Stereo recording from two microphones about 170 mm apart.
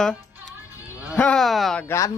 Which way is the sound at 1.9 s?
20° left (ahead or behind).